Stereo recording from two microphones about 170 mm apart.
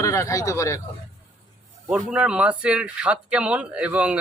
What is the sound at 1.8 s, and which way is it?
Speech, 5° right (ahead or behind).